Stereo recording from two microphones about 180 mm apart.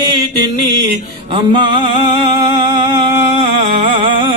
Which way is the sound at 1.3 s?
25° right (ahead or behind).